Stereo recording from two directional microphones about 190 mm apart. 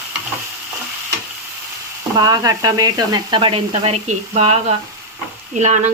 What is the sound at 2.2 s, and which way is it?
Speech, 20° right (ahead or behind).